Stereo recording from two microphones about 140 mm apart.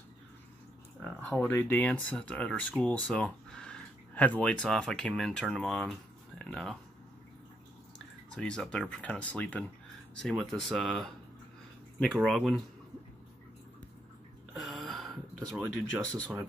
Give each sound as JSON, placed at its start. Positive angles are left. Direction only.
{"t": 1.0, "sound": "speech", "side_deg": 5}
{"t": 1.5, "sound": "speech", "side_deg": 15}
{"t": 8.4, "sound": "speech", "side_deg": 5}
{"t": 14.5, "sound": "a sound", "side_deg": 0}